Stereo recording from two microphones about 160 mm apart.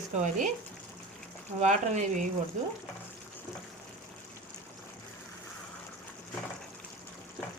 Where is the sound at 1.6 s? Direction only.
45° right (ahead or behind).